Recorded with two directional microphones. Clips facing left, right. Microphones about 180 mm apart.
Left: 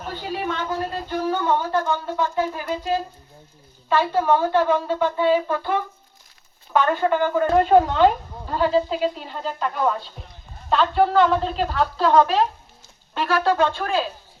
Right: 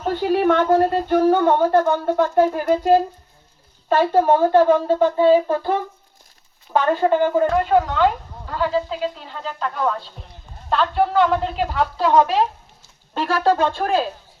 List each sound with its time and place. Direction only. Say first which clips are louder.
0.1 s speech: right 11 dB; 60° right (ahead or behind); by 7.4 s 30° right (ahead or behind)
7.5 s speech: left 2 dB; 25° left (ahead or behind); by 10.0 s 10° left (ahead or behind)
10.7 s a woman's voice: left 1 dB; 5° right (ahead or behind)
13.1 s speech: right 1 dB; 35° right (ahead or behind)